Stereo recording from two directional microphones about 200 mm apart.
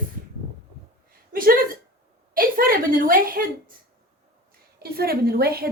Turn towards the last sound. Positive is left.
turn(degrees=-50)  # may be behind; listen again after turning